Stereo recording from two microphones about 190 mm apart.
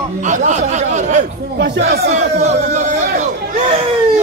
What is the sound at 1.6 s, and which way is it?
Speech, 60° right (ahead or behind).